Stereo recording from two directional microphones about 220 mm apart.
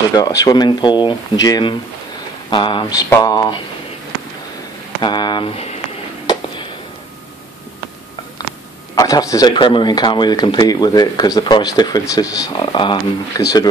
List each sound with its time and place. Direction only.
0.1 s a man's voice: 15° left (ahead or behind)
5.0 s a man's voice: 20° left (ahead or behind)
8.9 s a man's voice: 15° left (ahead or behind)